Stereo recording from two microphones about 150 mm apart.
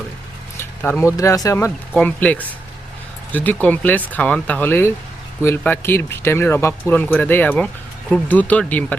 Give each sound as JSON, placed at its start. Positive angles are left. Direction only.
{"t": 0.8, "sound": "speech", "side_deg": 15}
{"t": 2.0, "sound": "speech", "side_deg": 10}